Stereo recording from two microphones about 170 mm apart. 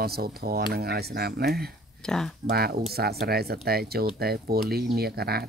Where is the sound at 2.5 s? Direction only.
65° right (ahead or behind).